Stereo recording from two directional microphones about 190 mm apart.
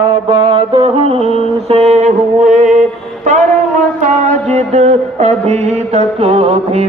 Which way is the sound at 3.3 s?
40° right (ahead or behind).